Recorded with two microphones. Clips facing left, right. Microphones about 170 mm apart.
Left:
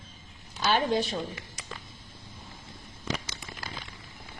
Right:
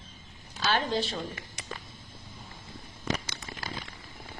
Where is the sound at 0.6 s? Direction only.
15° left (ahead or behind).